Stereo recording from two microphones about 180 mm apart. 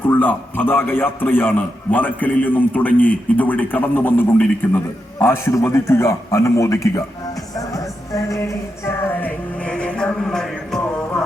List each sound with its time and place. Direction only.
0.0 s a man's voice: 10° left (ahead or behind)
7.7 s music: 20° left (ahead or behind); by 10.8 s centre (ahead or behind)